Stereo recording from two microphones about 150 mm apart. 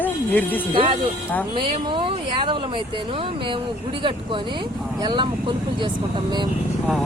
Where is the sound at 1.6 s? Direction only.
35° right (ahead or behind).